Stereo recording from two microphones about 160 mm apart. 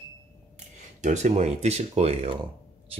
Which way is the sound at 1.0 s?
45° right (ahead or behind).